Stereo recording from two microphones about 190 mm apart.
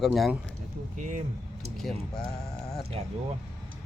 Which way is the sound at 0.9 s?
40° right (ahead or behind).